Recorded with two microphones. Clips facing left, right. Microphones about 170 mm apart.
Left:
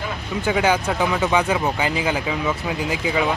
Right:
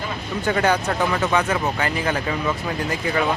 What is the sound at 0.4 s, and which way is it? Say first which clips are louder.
Speech: left 1 dB; 5° left (ahead or behind).